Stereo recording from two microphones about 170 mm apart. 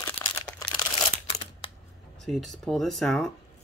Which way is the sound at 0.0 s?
5° left (ahead or behind).